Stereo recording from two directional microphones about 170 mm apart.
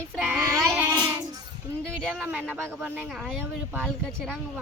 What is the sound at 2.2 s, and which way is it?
Speech, 10° right (ahead or behind).